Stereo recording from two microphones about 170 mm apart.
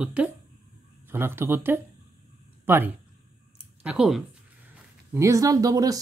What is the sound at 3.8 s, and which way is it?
Speech, centre (ahead or behind).